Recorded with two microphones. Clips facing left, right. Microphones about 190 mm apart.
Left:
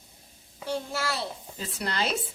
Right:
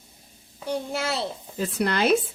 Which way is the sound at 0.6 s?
20° right (ahead or behind).